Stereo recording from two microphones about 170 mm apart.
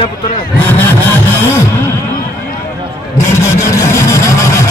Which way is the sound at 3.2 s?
15° left (ahead or behind).